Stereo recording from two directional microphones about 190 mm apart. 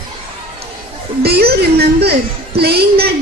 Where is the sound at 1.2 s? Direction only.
55° right (ahead or behind).